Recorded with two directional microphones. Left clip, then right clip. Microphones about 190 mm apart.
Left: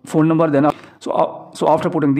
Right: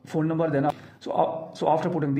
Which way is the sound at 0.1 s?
35° left (ahead or behind).